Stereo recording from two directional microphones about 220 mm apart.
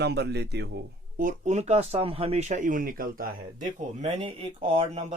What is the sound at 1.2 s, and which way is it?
Speech, 35° right (ahead or behind).